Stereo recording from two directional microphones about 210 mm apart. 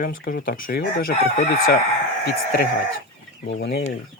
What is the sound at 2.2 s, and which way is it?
Speech, 50° left (ahead or behind).